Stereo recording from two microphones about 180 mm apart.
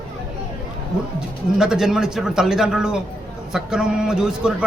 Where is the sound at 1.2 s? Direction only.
5° right (ahead or behind).